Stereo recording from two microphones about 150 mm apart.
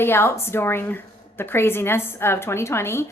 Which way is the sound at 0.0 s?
15° left (ahead or behind).